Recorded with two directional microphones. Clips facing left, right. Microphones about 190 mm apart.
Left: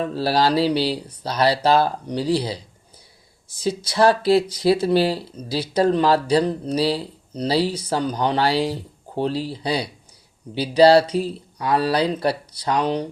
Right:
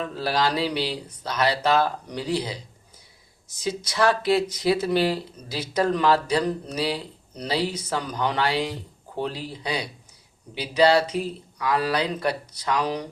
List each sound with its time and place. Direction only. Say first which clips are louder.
0.0 s speech: left 5 dB; 30° left (ahead or behind)